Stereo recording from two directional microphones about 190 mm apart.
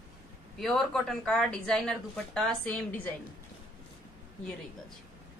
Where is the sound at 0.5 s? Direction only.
Centre (ahead or behind).